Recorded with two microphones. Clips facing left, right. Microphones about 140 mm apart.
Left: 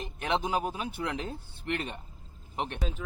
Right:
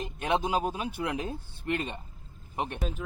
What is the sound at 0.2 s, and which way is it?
A man's voice, 15° right (ahead or behind).